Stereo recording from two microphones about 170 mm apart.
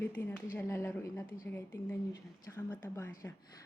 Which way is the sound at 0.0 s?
10° left (ahead or behind).